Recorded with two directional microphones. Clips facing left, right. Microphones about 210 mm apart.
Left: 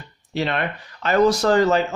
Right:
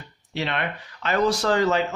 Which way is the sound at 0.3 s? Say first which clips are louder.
Left 4 dB; 40° left (ahead or behind).